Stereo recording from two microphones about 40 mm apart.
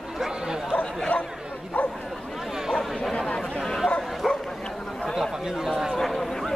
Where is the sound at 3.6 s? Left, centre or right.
Centre.